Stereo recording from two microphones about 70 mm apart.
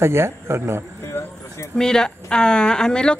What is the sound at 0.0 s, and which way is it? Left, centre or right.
Speech, right.